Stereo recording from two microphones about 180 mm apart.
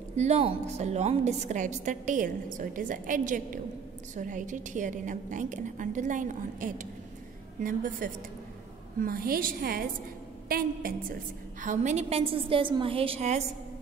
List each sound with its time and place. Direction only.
0.1 s a woman's voice: 35° right (ahead or behind); by 11.1 s 55° right (ahead or behind)
11.6 s a woman's voice: 45° right (ahead or behind)